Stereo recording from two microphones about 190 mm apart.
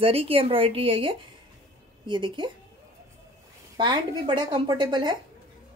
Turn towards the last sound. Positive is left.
turn(degrees=-25)  # may be behind; listen again after turning